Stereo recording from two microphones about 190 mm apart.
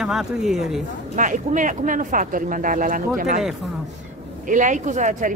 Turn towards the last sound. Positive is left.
turn(degrees=-40)  # may be behind; listen again after turning